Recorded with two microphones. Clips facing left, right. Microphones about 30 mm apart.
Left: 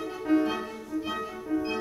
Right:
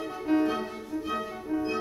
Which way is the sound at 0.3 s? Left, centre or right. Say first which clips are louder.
Left 1 dB; right.